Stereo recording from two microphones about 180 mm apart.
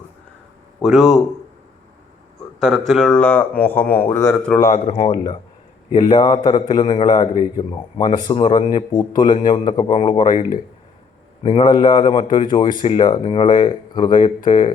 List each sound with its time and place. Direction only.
0.8 s speech: centre (ahead or behind)
2.6 s a man's voice: centre (ahead or behind)
4.6 s speech: 40° left (ahead or behind)
5.1 s a man's voice: 20° left (ahead or behind)
11.4 s a man's voice: 30° left (ahead or behind)